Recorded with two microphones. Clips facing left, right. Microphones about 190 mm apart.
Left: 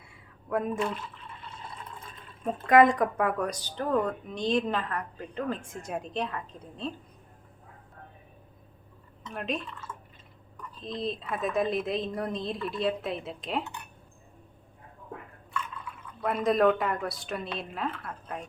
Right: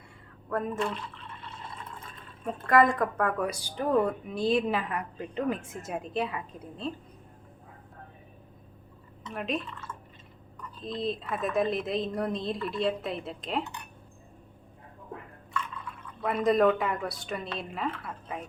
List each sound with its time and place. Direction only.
0.5 s speech: 5° left (ahead or behind)
2.6 s a woman's voice: 20° left (ahead or behind)
3.2 s a woman's voice: 5° right (ahead or behind)
9.2 s speech: centre (ahead or behind)
16.2 s speech: centre (ahead or behind)